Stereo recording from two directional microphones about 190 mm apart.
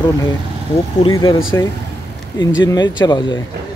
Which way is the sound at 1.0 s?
25° left (ahead or behind).